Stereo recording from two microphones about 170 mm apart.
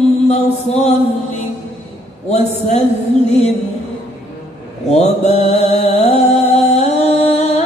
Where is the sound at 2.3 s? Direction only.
40° left (ahead or behind).